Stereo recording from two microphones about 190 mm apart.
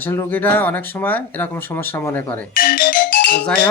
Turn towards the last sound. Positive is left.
turn(degrees=50)  # may be behind; listen again after turning